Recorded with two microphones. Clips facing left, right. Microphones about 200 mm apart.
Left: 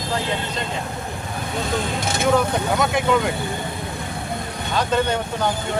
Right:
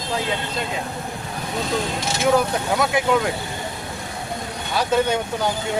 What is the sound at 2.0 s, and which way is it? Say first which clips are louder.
Speech: left 1 dB; 55° left (ahead or behind).